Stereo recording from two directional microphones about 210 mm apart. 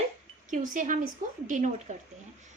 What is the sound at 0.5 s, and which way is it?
Speech, 40° right (ahead or behind).